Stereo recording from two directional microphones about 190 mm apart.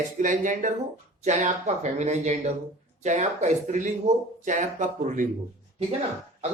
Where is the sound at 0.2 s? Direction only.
45° right (ahead or behind).